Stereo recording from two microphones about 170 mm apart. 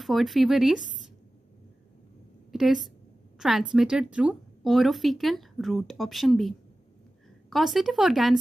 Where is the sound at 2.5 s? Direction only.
Centre (ahead or behind).